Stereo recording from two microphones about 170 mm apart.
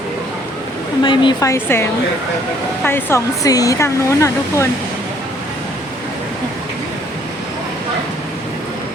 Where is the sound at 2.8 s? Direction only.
15° left (ahead or behind).